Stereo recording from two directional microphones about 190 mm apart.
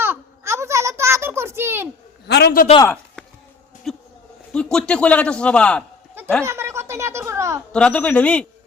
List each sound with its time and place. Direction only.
0.0 s a sound: 15° right (ahead or behind)
2.2 s a man's voice: 60° left (ahead or behind)
2.8 s chopping: 5° left (ahead or behind)
3.9 s a man's voice: centre (ahead or behind)
6.4 s speech: 15° right (ahead or behind)
7.7 s a man's voice: 5° left (ahead or behind)